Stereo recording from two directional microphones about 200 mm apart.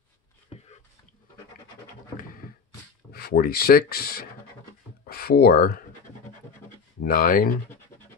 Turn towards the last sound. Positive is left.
turn(degrees=45)  # may be behind; listen again after turning